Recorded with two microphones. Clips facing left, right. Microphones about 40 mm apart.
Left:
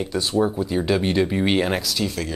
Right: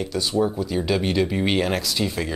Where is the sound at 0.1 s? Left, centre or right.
Left; by 1.8 s centre.